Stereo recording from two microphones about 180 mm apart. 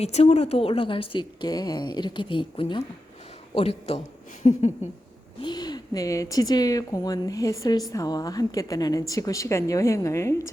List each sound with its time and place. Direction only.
0.0 s speech: 35° left (ahead or behind)
5.4 s speech: 25° left (ahead or behind)